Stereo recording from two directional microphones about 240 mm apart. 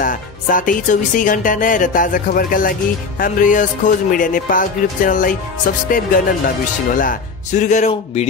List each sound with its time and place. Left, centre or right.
0.0 s speech: left